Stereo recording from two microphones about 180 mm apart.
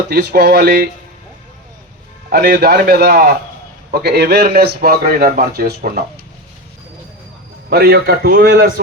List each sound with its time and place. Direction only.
0.1 s a man's voice: 65° right (ahead or behind)
2.3 s a man's voice: 60° right (ahead or behind)
7.7 s a man's voice: 60° right (ahead or behind)